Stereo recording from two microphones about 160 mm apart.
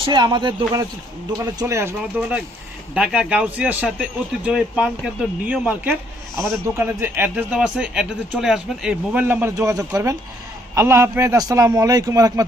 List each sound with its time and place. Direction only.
0.1 s speech: 30° right (ahead or behind)
2.0 s speech: 5° right (ahead or behind)